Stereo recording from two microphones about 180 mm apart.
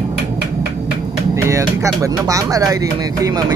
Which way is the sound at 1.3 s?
15° right (ahead or behind).